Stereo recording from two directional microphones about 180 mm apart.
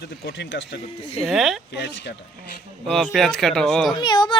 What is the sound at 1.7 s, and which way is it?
Speech, 75° left (ahead or behind).